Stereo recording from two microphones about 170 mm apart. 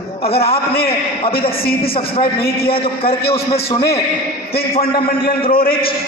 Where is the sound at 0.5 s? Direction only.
65° left (ahead or behind).